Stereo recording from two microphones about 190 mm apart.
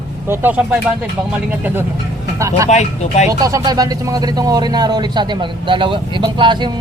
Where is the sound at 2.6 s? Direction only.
35° left (ahead or behind).